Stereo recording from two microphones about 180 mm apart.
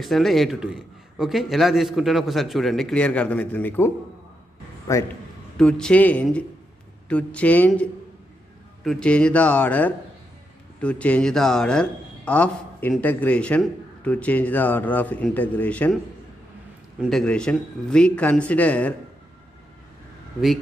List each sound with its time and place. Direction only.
0.0 s a man's voice: centre (ahead or behind); by 5.0 s 20° left (ahead or behind)
5.6 s a man's voice: 5° left (ahead or behind)
17.0 s a man's voice: centre (ahead or behind)